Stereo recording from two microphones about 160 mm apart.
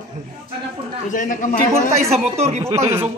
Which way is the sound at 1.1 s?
55° left (ahead or behind).